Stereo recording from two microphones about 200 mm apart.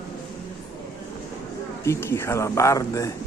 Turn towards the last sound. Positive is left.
turn(degrees=15)  # may be behind; listen again after turning